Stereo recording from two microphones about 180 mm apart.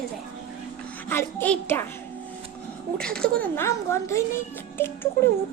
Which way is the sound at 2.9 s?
5° left (ahead or behind).